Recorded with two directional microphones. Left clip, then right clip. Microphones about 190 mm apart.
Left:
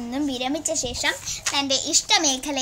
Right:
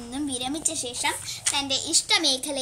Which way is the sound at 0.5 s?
25° left (ahead or behind).